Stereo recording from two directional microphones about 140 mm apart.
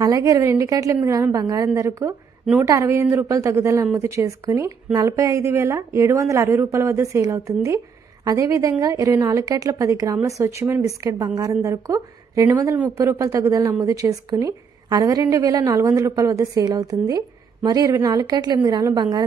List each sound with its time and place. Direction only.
0.0 s speech: 25° right (ahead or behind)